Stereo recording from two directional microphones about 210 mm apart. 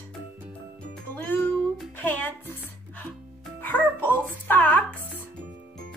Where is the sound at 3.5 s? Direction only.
10° left (ahead or behind).